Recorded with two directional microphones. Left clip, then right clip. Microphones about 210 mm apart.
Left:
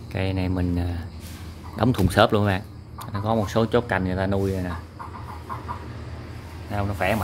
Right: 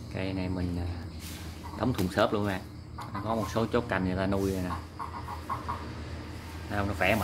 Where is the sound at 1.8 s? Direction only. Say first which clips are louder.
Left 8 dB; 40° left (ahead or behind); by 4.7 s 20° left (ahead or behind).